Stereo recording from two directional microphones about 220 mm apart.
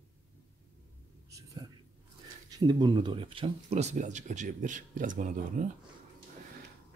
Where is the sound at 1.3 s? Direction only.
15° right (ahead or behind).